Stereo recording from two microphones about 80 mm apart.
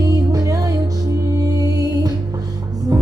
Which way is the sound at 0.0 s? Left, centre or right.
Right.